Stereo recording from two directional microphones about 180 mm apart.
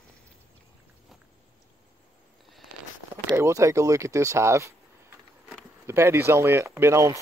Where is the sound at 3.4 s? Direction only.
15° right (ahead or behind).